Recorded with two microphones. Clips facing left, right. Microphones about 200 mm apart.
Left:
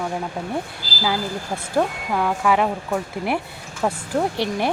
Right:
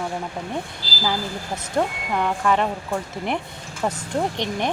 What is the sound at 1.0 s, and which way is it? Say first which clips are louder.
Speech: left 2 dB; 10° left (ahead or behind).